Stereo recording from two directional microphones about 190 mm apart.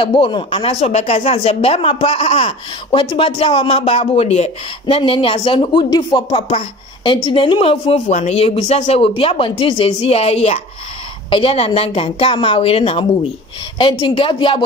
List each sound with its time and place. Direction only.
0.0 s speech: 25° left (ahead or behind)